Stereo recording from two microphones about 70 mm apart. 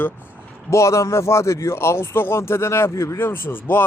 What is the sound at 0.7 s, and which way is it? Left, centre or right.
Speech, left.